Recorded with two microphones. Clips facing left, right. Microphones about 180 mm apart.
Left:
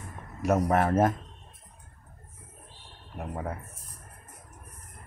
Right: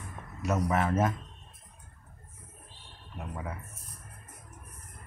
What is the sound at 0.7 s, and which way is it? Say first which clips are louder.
Speech: left 3 dB; 55° left (ahead or behind).